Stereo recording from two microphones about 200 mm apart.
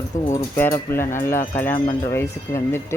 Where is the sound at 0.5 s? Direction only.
10° left (ahead or behind).